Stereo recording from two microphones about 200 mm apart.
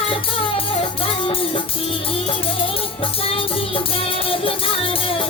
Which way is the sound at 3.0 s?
25° left (ahead or behind).